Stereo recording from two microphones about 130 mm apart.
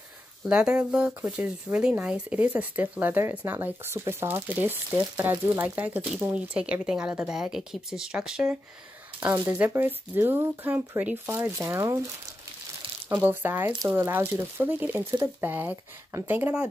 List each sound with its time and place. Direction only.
0.5 s speech: 10° right (ahead or behind)
13.1 s speech: 15° right (ahead or behind)